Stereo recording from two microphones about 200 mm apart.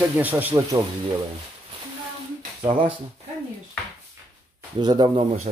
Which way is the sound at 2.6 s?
25° right (ahead or behind).